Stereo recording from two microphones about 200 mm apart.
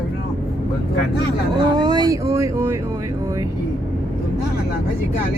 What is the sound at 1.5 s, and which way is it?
Speech, 20° right (ahead or behind).